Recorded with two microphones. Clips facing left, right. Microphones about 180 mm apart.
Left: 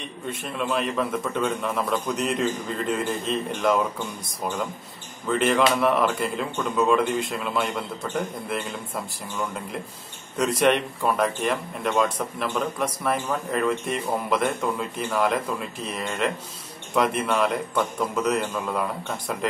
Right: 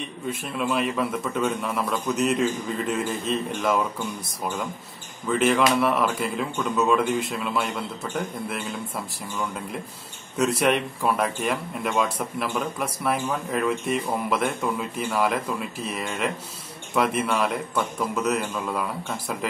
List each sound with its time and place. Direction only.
0.3 s speech: 5° right (ahead or behind)
5.3 s speech: 5° right (ahead or behind)
10.3 s speech: 5° right (ahead or behind)